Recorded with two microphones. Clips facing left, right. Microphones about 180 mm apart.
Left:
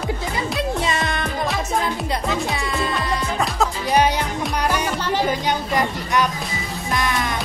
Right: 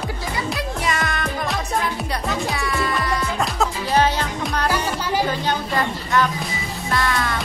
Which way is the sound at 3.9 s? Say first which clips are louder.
Left 1 dB; 15° left (ahead or behind).